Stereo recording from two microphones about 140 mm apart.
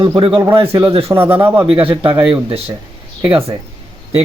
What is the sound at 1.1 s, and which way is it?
Speech, 15° right (ahead or behind).